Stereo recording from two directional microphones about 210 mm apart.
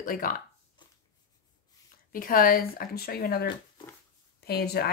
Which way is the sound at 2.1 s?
40° left (ahead or behind).